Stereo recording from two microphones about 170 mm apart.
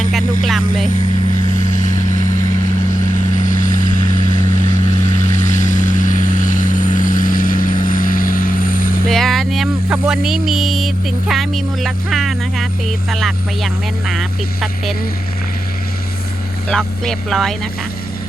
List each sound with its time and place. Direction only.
0.1 s vehicle: centre (ahead or behind)
4.5 s vehicle: 45° left (ahead or behind)
9.0 s speech: centre (ahead or behind)
16.6 s speech: 5° left (ahead or behind)